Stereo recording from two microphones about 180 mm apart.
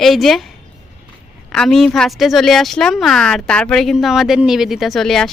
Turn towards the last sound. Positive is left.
turn(degrees=0)  # may be behind; listen again after turning